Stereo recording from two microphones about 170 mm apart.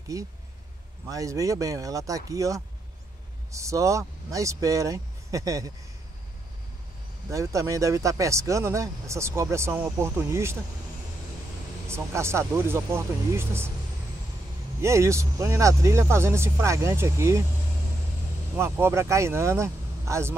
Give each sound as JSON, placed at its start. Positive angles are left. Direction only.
{"t": 0.1, "sound": "speech", "side_deg": -20}
{"t": 7.2, "sound": "speech", "side_deg": -20}
{"t": 11.9, "sound": "speech", "side_deg": -15}
{"t": 14.8, "sound": "speech", "side_deg": -15}
{"t": 18.6, "sound": "speech", "side_deg": -15}